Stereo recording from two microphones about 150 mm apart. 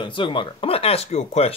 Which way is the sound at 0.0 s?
35° left (ahead or behind).